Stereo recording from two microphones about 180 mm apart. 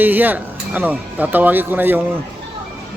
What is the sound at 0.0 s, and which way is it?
Speech, 10° right (ahead or behind).